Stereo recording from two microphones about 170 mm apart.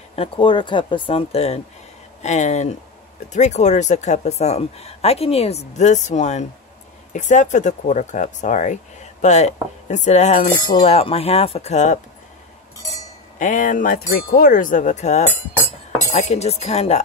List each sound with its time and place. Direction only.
0.1 s speech: 30° left (ahead or behind)
9.2 s cutlery: 45° left (ahead or behind)
13.4 s speech: 50° left (ahead or behind)
16.1 s cutlery: 40° left (ahead or behind)